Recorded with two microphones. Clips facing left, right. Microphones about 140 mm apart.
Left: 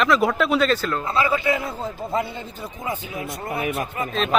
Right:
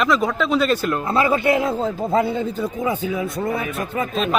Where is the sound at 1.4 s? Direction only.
80° right.